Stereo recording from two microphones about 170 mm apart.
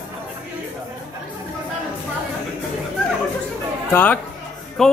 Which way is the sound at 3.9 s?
10° left (ahead or behind).